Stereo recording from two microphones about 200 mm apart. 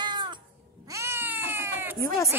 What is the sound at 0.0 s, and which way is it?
Cat, 20° right (ahead or behind).